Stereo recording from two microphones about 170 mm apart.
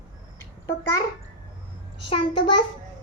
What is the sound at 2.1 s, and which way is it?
Speech, 25° left (ahead or behind).